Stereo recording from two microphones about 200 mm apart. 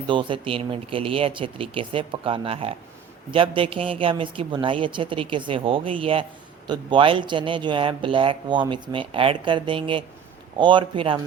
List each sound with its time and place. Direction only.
0.1 s a man's voice: 25° right (ahead or behind)